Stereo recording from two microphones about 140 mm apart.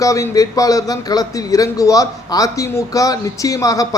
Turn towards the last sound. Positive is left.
turn(degrees=25)  # may be behind; listen again after turning